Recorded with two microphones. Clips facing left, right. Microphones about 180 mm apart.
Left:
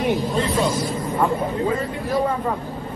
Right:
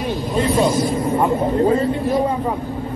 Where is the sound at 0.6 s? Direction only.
20° right (ahead or behind).